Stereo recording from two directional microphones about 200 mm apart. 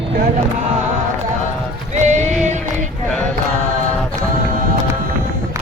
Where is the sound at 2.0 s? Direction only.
35° right (ahead or behind).